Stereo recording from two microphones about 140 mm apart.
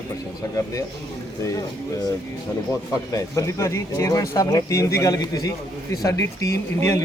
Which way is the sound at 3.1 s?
25° left (ahead or behind).